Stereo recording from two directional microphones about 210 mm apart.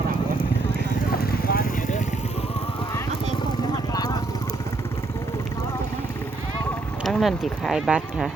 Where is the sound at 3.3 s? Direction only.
20° left (ahead or behind).